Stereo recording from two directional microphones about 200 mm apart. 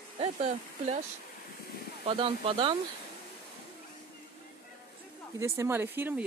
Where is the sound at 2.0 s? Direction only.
30° right (ahead or behind).